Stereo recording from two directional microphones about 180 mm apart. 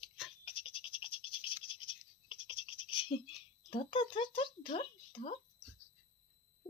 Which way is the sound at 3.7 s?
25° left (ahead or behind).